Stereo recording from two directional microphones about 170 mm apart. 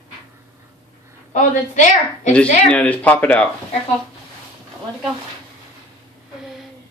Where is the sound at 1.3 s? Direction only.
45° left (ahead or behind).